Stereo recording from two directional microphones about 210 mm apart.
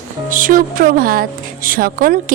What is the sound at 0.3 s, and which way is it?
Speech, 40° right (ahead or behind).